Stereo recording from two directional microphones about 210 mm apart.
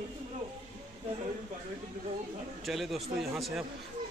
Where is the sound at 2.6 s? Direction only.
Centre (ahead or behind).